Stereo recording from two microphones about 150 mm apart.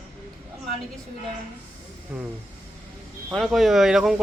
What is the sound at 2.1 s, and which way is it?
Speech, 10° right (ahead or behind).